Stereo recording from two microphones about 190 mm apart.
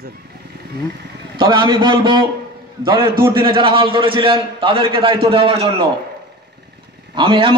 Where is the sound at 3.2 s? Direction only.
25° right (ahead or behind).